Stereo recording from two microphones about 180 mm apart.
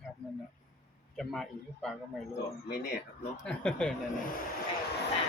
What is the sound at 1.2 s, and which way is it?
Speech, centre (ahead or behind).